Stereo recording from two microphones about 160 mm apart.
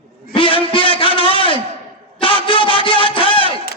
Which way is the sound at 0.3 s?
35° left (ahead or behind).